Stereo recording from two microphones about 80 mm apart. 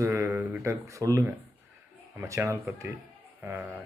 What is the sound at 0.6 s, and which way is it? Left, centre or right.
Speech, right.